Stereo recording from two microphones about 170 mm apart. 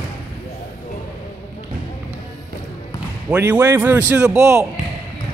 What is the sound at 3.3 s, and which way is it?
A man's voice, 10° right (ahead or behind).